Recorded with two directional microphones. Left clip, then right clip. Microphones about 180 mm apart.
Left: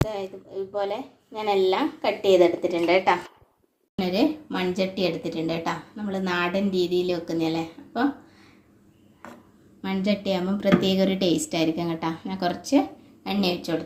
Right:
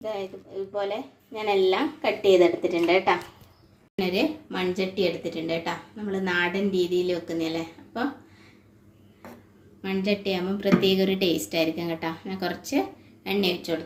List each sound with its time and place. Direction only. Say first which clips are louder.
0.1 s speech: even; 5° right (ahead or behind)
3.9 s a woman's voice: left 2 dB; 45° left (ahead or behind)
9.8 s a woman's voice: even; 45° left (ahead or behind)